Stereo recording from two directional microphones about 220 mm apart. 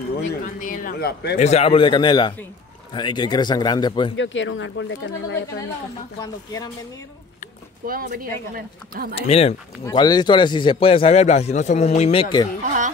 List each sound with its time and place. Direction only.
0.3 s speech: 40° left (ahead or behind)
1.4 s a man's voice: 30° left (ahead or behind)
4.2 s speech: 60° left (ahead or behind)
7.8 s speech: 40° right (ahead or behind)
9.1 s a man's voice: 25° left (ahead or behind)